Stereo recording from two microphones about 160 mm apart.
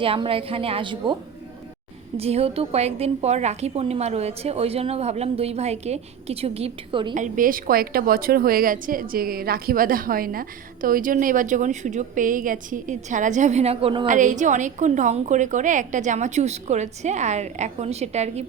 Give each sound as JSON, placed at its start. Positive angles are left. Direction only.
{"t": 0.0, "sound": "a woman's voice", "side_deg": -35}
{"t": 2.1, "sound": "a woman's voice", "side_deg": -40}
{"t": 7.1, "sound": "a woman's voice", "side_deg": -55}
{"t": 14.1, "sound": "a woman's voice", "side_deg": -50}